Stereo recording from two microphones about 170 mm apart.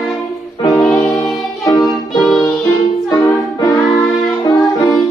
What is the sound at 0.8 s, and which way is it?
Music, 5° left (ahead or behind).